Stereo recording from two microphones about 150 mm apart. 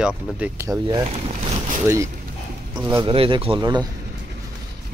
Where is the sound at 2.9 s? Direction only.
35° right (ahead or behind).